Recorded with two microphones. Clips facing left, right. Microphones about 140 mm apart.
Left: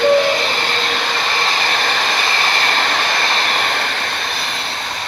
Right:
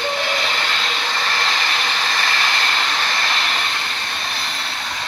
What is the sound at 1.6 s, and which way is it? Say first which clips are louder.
Vehicle: left 4 dB; 55° left (ahead or behind).